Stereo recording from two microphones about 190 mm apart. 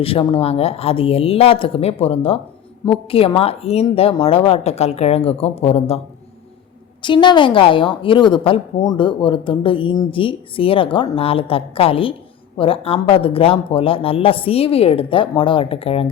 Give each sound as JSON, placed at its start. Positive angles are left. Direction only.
{"t": 0.0, "sound": "a woman's voice", "side_deg": 30}
{"t": 7.0, "sound": "speech", "side_deg": 25}